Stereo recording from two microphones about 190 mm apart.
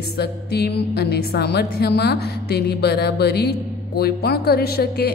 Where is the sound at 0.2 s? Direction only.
60° left (ahead or behind).